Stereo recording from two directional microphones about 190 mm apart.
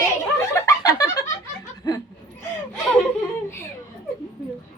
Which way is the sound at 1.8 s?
20° left (ahead or behind).